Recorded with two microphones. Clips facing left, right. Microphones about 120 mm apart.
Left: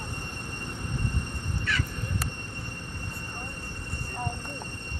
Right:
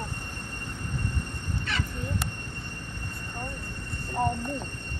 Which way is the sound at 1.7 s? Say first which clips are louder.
Left 1 dB; 25° right (ahead or behind).